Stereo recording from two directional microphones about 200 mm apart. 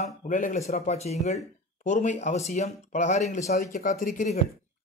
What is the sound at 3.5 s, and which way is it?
Speech, 50° left (ahead or behind).